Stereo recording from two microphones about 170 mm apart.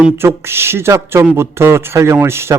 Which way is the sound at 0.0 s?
10° right (ahead or behind).